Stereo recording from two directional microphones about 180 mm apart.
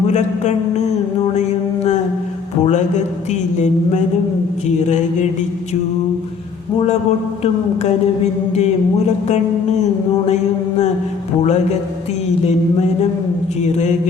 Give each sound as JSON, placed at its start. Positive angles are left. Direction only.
{"t": 1.4, "sound": "mantra", "side_deg": 40}
{"t": 7.8, "sound": "mantra", "side_deg": 40}